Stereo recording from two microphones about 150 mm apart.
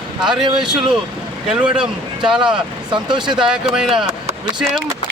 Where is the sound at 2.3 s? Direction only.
5° right (ahead or behind).